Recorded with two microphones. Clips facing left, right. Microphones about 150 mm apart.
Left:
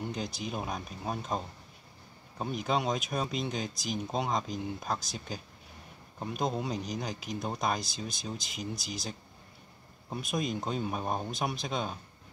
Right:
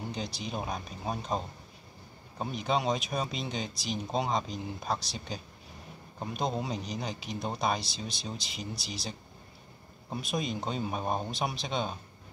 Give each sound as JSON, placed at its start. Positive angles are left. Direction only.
{"t": 0.0, "sound": "a sound", "side_deg": 0}
{"t": 0.4, "sound": "speech", "side_deg": 0}
{"t": 7.8, "sound": "speech", "side_deg": 45}
{"t": 10.3, "sound": "speech", "side_deg": 0}